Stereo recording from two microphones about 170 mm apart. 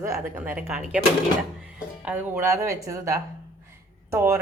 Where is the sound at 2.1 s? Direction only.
10° right (ahead or behind).